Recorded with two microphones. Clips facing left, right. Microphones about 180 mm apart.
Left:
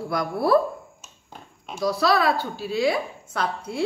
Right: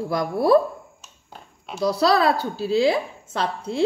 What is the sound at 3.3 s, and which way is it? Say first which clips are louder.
Speech: right 2 dB; 25° right (ahead or behind).